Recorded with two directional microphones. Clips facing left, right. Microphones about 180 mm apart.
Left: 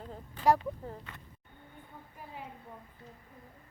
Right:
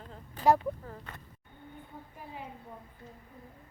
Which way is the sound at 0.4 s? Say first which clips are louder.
Right 1 dB; 40° right (ahead or behind).